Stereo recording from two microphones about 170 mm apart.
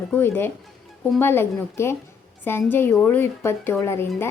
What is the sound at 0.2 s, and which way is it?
A woman's voice, 15° left (ahead or behind).